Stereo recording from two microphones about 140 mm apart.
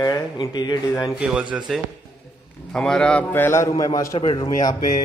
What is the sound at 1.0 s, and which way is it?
Speech, 5° right (ahead or behind).